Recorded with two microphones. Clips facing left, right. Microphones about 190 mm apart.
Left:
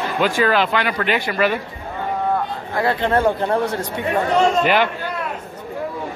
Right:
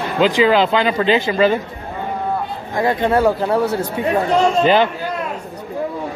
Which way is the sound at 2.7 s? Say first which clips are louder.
Right 2 dB; 15° right (ahead or behind).